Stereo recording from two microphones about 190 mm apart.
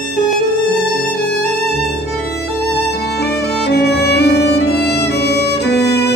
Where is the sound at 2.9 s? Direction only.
60° left (ahead or behind).